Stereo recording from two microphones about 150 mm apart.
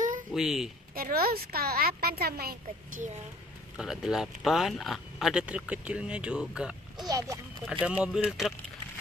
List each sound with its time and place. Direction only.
0.3 s speech: centre (ahead or behind)
0.9 s speech: 80° right
3.7 s speech: 5° right (ahead or behind)
7.1 s speech: 25° right (ahead or behind)
7.8 s speech: 5° right (ahead or behind)